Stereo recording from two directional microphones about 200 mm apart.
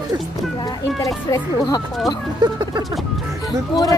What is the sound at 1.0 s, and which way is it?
Speech, 15° left (ahead or behind).